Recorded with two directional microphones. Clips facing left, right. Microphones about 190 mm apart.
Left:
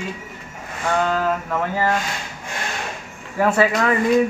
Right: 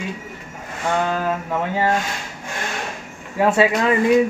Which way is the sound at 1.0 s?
15° right (ahead or behind).